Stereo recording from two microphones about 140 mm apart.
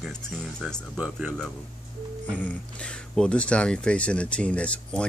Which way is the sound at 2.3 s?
10° left (ahead or behind).